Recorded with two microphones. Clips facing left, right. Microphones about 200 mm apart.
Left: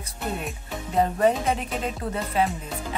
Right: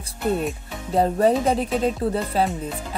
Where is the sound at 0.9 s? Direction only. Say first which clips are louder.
Right 3 dB; 35° right (ahead or behind).